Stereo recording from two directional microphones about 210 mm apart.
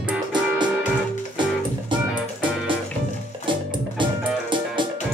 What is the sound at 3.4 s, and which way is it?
Music, 25° right (ahead or behind).